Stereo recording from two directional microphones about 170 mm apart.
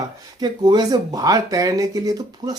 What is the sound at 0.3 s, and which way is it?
Speech, 25° right (ahead or behind).